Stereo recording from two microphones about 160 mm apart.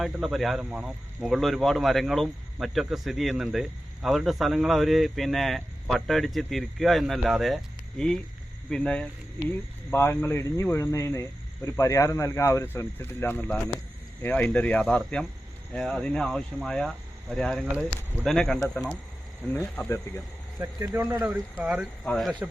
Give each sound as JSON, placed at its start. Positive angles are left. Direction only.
{"t": 0.0, "sound": "speech", "side_deg": 0}
{"t": 20.6, "sound": "speech", "side_deg": -20}
{"t": 22.0, "sound": "speech", "side_deg": 5}